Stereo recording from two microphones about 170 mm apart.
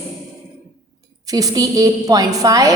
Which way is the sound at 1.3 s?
20° right (ahead or behind).